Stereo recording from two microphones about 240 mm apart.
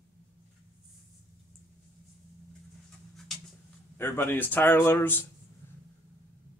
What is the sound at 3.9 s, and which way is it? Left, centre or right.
Speech, centre.